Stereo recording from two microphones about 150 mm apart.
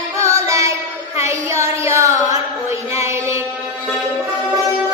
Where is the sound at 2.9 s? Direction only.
20° right (ahead or behind).